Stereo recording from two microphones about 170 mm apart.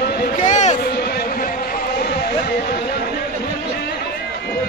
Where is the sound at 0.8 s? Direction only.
65° left (ahead or behind).